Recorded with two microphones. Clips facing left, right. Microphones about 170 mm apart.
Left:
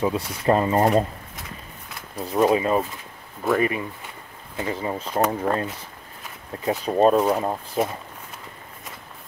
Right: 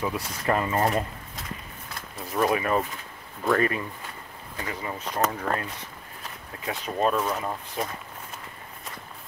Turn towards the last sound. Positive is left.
turn(degrees=35)  # may be behind; listen again after turning